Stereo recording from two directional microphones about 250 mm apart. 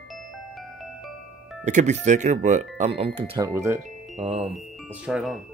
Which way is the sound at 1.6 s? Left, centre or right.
Right.